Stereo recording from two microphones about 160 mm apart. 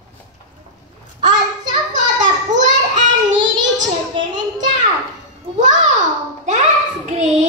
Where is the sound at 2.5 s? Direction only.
50° right (ahead or behind).